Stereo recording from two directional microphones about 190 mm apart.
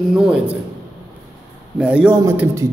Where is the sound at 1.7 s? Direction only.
5° right (ahead or behind).